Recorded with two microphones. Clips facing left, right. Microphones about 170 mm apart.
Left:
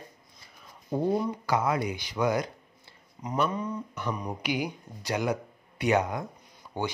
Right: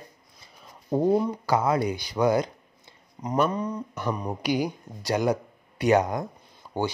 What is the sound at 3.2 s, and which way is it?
Speech, 40° right (ahead or behind).